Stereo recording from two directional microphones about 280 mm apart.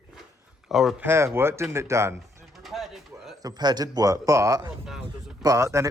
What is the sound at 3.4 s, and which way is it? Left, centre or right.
Speech, centre.